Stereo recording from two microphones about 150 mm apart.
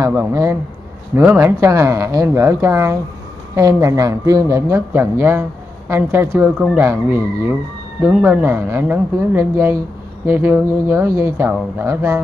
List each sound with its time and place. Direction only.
0.0 s speech: 15° right (ahead or behind)
6.6 s speech: 5° right (ahead or behind)